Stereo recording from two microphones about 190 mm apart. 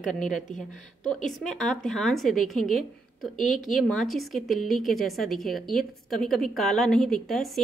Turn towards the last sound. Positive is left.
turn(degrees=0)  # may be behind; listen again after turning